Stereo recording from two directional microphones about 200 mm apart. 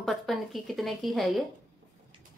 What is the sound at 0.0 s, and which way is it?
A woman's voice, centre (ahead or behind).